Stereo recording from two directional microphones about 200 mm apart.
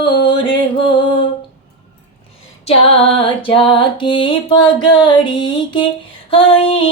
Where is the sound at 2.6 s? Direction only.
30° left (ahead or behind).